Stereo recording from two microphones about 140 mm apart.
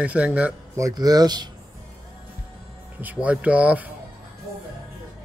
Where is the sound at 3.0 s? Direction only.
10° right (ahead or behind).